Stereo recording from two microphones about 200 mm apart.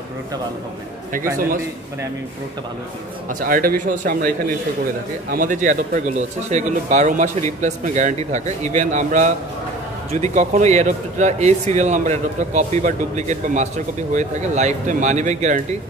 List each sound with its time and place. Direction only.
3.3 s speech: 45° right (ahead or behind)
5.3 s speech: 40° right (ahead or behind)